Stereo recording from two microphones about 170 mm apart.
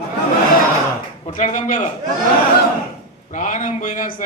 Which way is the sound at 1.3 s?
50° left (ahead or behind).